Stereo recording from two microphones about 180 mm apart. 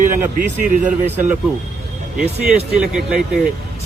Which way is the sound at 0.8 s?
10° right (ahead or behind).